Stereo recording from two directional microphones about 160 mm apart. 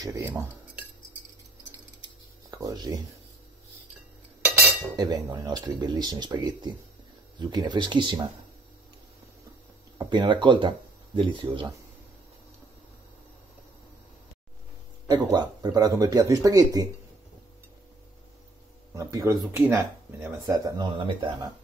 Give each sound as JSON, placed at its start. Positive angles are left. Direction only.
{"t": 0.0, "sound": "cutlery", "side_deg": -20}
{"t": 2.5, "sound": "speech", "side_deg": -25}
{"t": 4.9, "sound": "speech", "side_deg": -25}
{"t": 9.9, "sound": "speech", "side_deg": -30}
{"t": 15.0, "sound": "speech", "side_deg": -25}
{"t": 18.9, "sound": "speech", "side_deg": -20}